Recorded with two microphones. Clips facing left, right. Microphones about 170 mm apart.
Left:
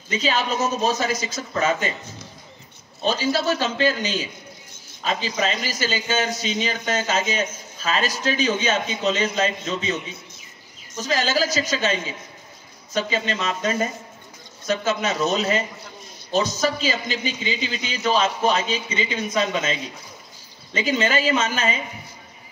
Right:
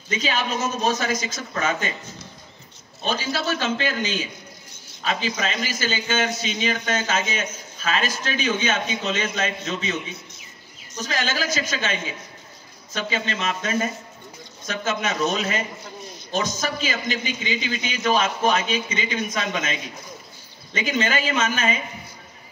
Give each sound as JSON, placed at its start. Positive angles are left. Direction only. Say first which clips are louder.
{"t": 0.1, "sound": "a man's voice", "louder": "left 2 dB", "side_deg": 35}
{"t": 3.1, "sound": "a man's voice", "louder": "left 4 dB", "side_deg": 40}
{"t": 11.1, "sound": "a man's voice", "louder": "left 4 dB", "side_deg": 35}
{"t": 20.7, "sound": "a man's voice", "louder": "left 2 dB", "side_deg": 35}